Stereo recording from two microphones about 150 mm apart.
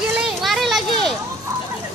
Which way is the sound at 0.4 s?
Centre (ahead or behind).